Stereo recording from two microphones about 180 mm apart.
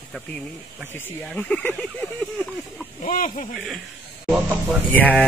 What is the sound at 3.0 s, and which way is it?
Speech, 45° left (ahead or behind).